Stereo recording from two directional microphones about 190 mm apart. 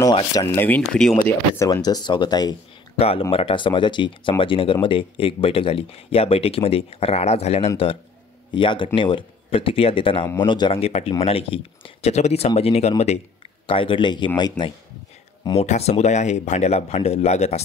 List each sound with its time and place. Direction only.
0.0 s speech: 20° left (ahead or behind)
0.5 s speech: 10° left (ahead or behind)
1.6 s speech: 20° left (ahead or behind)
3.0 s speech: 30° left (ahead or behind)
15.4 s speech: 35° left (ahead or behind)